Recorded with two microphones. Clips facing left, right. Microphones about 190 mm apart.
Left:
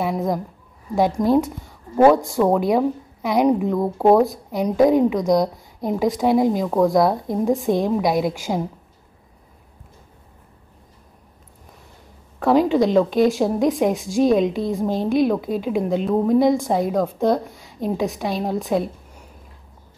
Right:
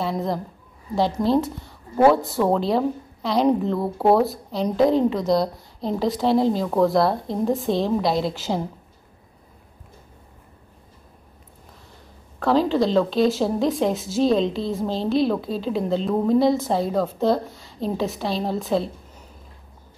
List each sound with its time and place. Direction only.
0.9 s a woman's voice: 15° left (ahead or behind)
12.4 s a woman's voice: 15° left (ahead or behind)